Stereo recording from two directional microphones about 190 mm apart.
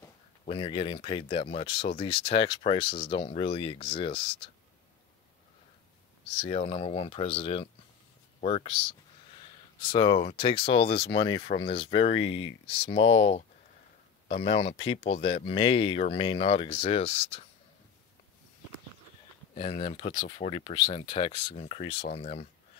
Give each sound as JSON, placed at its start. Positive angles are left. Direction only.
{"t": 0.5, "sound": "speech", "side_deg": 30}
{"t": 6.4, "sound": "speech", "side_deg": 35}
{"t": 19.5, "sound": "speech", "side_deg": 35}
{"t": 20.0, "sound": "speech", "side_deg": 25}